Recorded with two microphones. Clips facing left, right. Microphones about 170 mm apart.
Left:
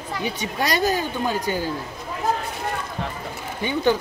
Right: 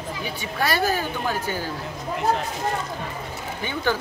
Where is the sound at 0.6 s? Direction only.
20° left (ahead or behind).